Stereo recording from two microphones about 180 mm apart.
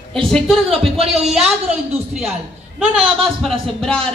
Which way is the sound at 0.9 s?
35° right (ahead or behind).